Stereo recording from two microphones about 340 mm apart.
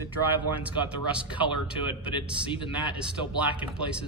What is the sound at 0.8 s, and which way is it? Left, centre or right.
Speech, centre.